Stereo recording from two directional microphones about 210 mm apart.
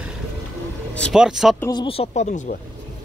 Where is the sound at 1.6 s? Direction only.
20° left (ahead or behind).